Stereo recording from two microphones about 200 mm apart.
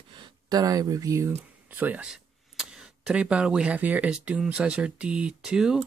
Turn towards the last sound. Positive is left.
turn(degrees=-5)  # may be behind; listen again after turning